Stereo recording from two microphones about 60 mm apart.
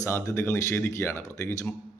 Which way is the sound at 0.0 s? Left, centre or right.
Left.